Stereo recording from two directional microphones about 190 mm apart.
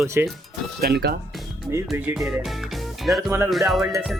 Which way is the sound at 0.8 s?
55° right (ahead or behind).